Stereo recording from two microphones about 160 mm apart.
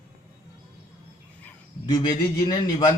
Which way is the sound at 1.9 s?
25° left (ahead or behind).